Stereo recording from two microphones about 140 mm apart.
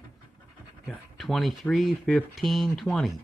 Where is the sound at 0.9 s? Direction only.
Centre (ahead or behind).